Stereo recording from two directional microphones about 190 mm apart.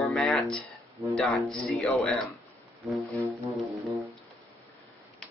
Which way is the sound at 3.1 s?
15° right (ahead or behind).